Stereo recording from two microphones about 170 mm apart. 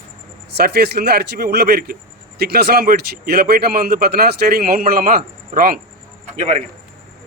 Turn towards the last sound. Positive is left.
turn(degrees=-40)  # may be behind; listen again after turning